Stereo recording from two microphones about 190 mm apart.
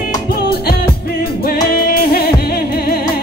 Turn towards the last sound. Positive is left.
turn(degrees=55)  # may be behind; listen again after turning